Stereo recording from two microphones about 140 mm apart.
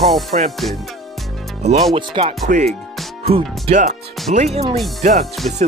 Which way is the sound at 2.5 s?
60° right (ahead or behind).